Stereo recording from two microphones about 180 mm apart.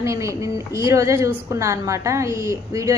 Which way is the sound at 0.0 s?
15° right (ahead or behind).